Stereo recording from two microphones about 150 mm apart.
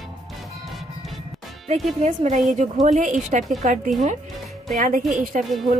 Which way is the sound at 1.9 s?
50° right (ahead or behind).